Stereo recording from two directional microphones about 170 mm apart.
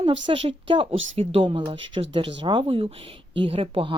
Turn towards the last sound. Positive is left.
turn(degrees=-35)  # may be behind; listen again after turning